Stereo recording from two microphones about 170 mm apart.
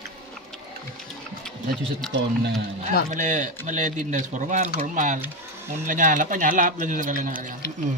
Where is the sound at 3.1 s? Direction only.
50° right (ahead or behind).